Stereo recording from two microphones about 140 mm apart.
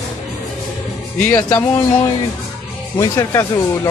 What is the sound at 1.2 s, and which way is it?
Speech, 15° left (ahead or behind).